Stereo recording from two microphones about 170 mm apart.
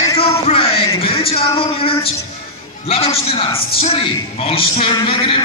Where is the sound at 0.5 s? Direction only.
35° left (ahead or behind).